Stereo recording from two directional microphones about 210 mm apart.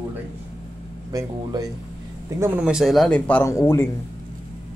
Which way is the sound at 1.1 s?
15° right (ahead or behind).